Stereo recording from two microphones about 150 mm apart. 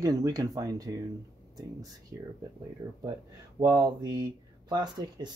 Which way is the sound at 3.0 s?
25° right (ahead or behind).